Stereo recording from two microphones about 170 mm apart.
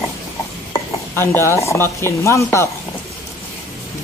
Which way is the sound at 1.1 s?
15° left (ahead or behind).